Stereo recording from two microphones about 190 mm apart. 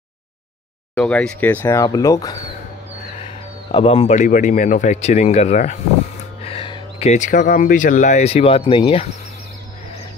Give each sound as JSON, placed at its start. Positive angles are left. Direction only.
{"t": 0.9, "sound": "speech", "side_deg": 5}
{"t": 3.2, "sound": "speech", "side_deg": 30}
{"t": 6.4, "sound": "speech", "side_deg": 30}